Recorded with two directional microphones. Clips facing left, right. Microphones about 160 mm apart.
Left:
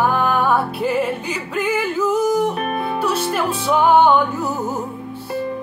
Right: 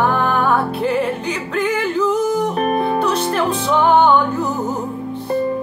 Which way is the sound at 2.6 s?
35° right (ahead or behind).